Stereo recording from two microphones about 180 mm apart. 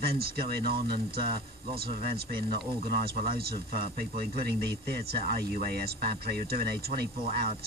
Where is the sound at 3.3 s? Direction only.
55° right (ahead or behind).